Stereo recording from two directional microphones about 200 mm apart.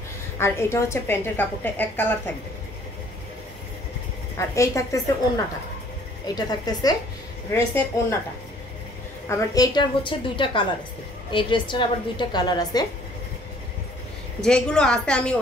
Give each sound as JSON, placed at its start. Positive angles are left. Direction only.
{"t": 0.4, "sound": "a woman's voice", "side_deg": 15}
{"t": 4.6, "sound": "a woman's voice", "side_deg": 15}
{"t": 6.2, "sound": "a woman's voice", "side_deg": 20}
{"t": 9.3, "sound": "a woman's voice", "side_deg": 20}
{"t": 14.4, "sound": "a woman's voice", "side_deg": 5}